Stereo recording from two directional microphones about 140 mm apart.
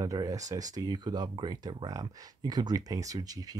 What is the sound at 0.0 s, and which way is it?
Speech, 25° right (ahead or behind).